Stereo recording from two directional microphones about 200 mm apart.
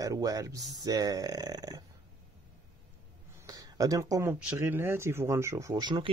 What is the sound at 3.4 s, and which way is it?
Speech, 20° right (ahead or behind).